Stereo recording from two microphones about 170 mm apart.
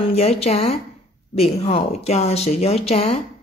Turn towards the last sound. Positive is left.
turn(degrees=35)  # may be behind; listen again after turning